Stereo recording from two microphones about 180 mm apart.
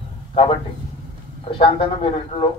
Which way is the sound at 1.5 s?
30° left (ahead or behind).